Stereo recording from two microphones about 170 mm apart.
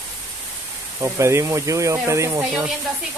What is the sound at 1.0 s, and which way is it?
Speech, 15° right (ahead or behind).